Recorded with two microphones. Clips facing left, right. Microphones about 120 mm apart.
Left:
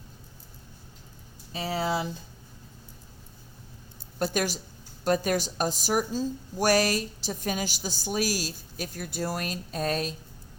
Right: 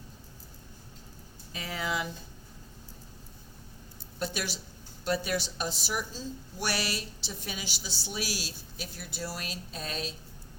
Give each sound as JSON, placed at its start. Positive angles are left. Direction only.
{"t": 1.5, "sound": "speech", "side_deg": 30}
{"t": 4.2, "sound": "a woman's voice", "side_deg": 45}